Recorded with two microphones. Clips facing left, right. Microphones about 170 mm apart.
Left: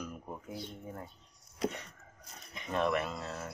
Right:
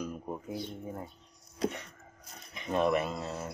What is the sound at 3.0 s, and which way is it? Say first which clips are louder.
Speech: right 3 dB; 10° right (ahead or behind).